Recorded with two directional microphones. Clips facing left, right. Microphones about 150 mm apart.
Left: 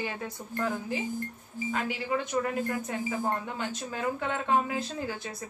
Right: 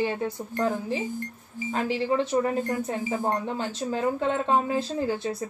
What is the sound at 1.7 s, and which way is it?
Speech, 35° right (ahead or behind).